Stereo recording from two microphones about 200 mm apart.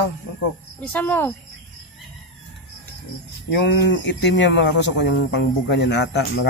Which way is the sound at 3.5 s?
65° left (ahead or behind).